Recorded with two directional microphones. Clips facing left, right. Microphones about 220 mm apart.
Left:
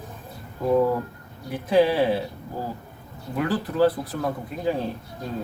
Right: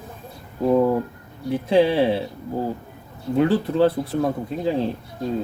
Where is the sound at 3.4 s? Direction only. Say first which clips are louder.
Right 4 dB; 25° right (ahead or behind).